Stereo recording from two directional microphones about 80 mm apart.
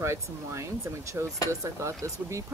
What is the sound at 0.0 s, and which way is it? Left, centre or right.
Speech, right.